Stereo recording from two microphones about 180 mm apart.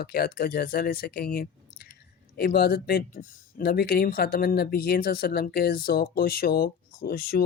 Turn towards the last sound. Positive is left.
turn(degrees=55)  # may be behind; listen again after turning